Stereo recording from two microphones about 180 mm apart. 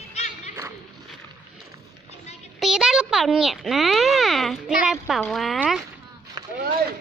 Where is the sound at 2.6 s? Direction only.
5° right (ahead or behind).